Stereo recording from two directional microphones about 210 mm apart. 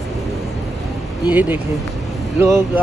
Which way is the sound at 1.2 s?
10° right (ahead or behind).